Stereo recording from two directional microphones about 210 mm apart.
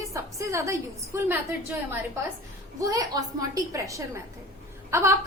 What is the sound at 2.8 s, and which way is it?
A woman's voice, 15° right (ahead or behind).